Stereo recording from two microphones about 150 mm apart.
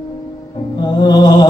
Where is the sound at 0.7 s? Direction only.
30° left (ahead or behind).